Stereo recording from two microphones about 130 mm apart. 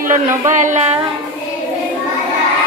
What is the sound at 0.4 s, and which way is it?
Speech, 75° right (ahead or behind).